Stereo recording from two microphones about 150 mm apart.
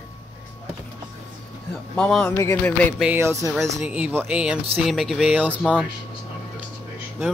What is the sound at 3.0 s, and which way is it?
Speech, 15° right (ahead or behind).